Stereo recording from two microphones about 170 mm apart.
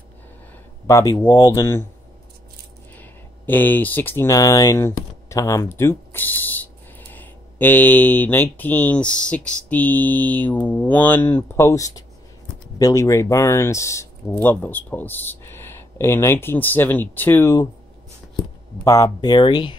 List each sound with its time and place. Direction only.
0.8 s speech: 20° left (ahead or behind)
3.0 s speech: 10° left (ahead or behind)
18.9 s speech: 15° left (ahead or behind)